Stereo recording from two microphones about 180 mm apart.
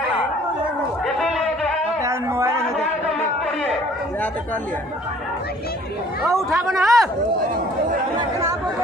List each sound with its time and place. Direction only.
2.0 s a sound: 15° right (ahead or behind)
6.2 s speech: centre (ahead or behind)
8.2 s speech: 15° right (ahead or behind)